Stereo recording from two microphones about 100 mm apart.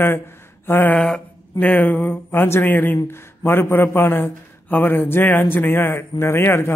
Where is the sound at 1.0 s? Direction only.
5° left (ahead or behind); by 6.7 s 25° left (ahead or behind).